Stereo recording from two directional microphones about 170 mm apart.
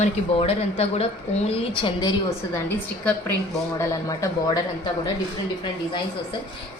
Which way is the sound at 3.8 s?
20° left (ahead or behind).